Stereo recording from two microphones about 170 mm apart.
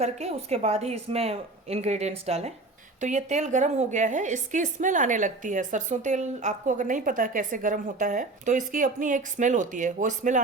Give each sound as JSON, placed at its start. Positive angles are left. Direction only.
{"t": 0.0, "sound": "a woman's voice", "side_deg": -40}